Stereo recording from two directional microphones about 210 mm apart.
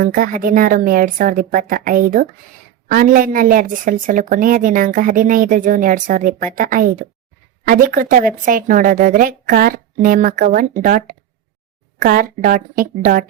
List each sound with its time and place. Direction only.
0.0 s a woman's voice: 40° right (ahead or behind)